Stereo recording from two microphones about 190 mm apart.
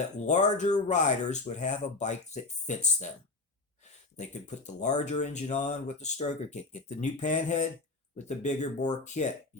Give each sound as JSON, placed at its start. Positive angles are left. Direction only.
{"t": 0.3, "sound": "speech", "side_deg": 40}
{"t": 4.2, "sound": "speech", "side_deg": 40}